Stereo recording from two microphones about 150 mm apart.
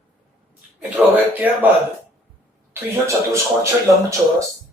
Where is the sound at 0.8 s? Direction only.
10° right (ahead or behind).